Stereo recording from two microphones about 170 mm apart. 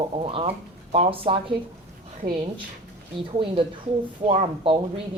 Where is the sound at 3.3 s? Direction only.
30° right (ahead or behind).